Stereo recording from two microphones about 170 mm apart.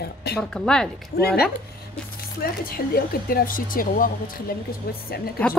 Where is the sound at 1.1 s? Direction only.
65° left (ahead or behind).